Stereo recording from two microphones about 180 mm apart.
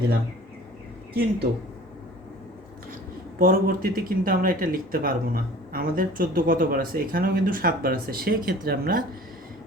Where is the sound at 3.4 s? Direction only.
55° right (ahead or behind).